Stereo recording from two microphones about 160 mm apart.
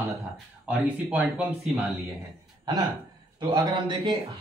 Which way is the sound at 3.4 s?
30° right (ahead or behind).